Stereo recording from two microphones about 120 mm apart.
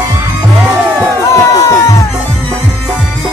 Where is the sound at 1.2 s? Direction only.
30° left (ahead or behind).